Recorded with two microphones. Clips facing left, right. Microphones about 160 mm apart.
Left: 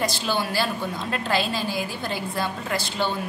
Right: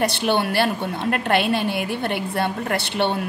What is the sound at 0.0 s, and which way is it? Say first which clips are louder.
A woman's voice: right 5 dB; 65° right (ahead or behind).